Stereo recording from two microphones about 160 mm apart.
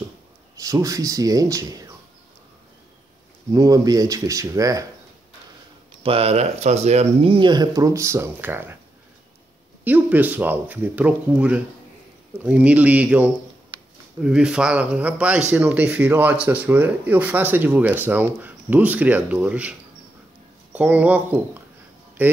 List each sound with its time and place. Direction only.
0.6 s speech: 20° right (ahead or behind)
3.5 s speech: 20° right (ahead or behind)
6.0 s speech: 35° right (ahead or behind); by 8.7 s 15° right (ahead or behind)
9.8 s speech: 10° right (ahead or behind)
20.7 s speech: 10° right (ahead or behind)